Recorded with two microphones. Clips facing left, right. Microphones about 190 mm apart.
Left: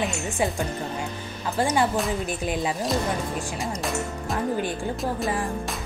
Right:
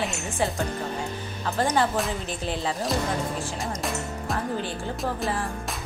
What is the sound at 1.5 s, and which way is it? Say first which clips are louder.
Speech: left 1 dB; 15° left (ahead or behind).